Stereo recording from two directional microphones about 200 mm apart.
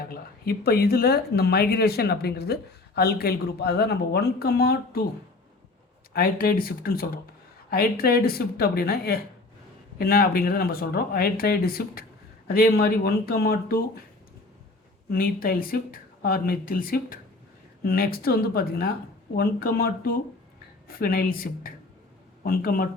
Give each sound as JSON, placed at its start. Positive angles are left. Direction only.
{"t": 0.0, "sound": "speech", "side_deg": 50}
{"t": 6.1, "sound": "speech", "side_deg": 45}
{"t": 15.1, "sound": "speech", "side_deg": 50}